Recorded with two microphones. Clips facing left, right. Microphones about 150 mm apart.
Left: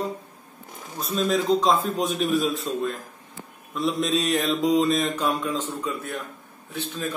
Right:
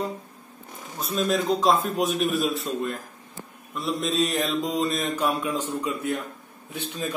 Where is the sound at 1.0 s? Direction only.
Centre (ahead or behind).